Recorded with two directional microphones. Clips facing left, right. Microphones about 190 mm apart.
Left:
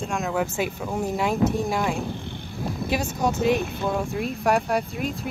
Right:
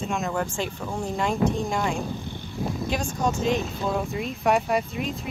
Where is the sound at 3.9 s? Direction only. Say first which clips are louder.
Left 1 dB; centre (ahead or behind).